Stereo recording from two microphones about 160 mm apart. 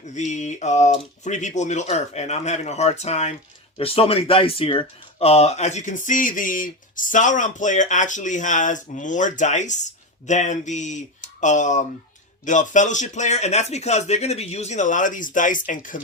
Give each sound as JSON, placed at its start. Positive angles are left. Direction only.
{"t": 0.1, "sound": "speech", "side_deg": 50}